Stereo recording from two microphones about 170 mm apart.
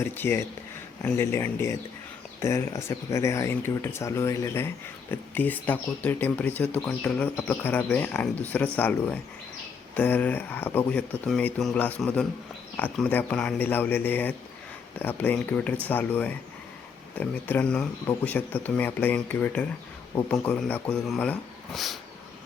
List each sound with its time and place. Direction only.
0.0 s speech: 15° left (ahead or behind)